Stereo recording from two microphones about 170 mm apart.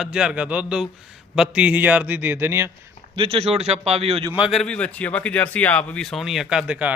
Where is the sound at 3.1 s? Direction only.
35° right (ahead or behind).